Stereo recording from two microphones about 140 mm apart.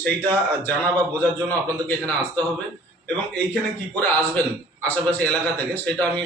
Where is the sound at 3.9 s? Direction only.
10° left (ahead or behind).